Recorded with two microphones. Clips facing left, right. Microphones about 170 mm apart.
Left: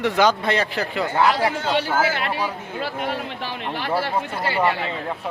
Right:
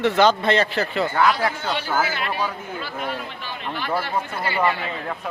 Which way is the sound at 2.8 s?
80° left.